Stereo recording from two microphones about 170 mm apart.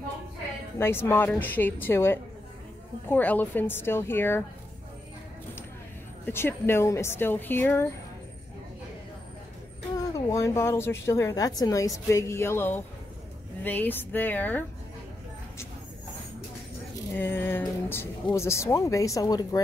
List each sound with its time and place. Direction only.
0.7 s speech: 15° left (ahead or behind)
6.2 s speech: 15° left (ahead or behind)
10.1 s speech: 20° left (ahead or behind)
17.1 s speech: 10° left (ahead or behind)